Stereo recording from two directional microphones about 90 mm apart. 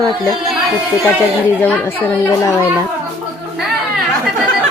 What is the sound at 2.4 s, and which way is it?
Speech, 35° left (ahead or behind).